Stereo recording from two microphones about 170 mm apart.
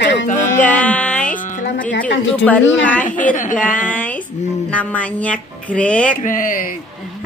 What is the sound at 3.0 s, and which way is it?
Speech, 50° left (ahead or behind).